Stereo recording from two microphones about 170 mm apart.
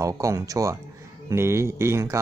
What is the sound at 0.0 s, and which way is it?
A man's voice, 20° right (ahead or behind).